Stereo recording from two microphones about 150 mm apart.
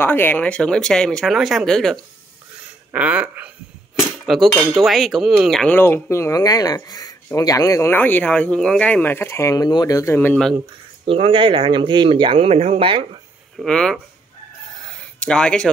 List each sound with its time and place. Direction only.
0.0 s speech: 15° left (ahead or behind)
2.9 s speech: 10° right (ahead or behind)
4.6 s speech: centre (ahead or behind)
5.8 s speech: 15° left (ahead or behind)
11.1 s speech: 40° right (ahead or behind)
13.6 s speech: 5° left (ahead or behind)
14.8 s a sound: 5° left (ahead or behind)